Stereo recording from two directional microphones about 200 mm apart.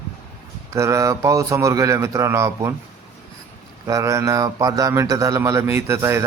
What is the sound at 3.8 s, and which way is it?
Speech, 15° right (ahead or behind).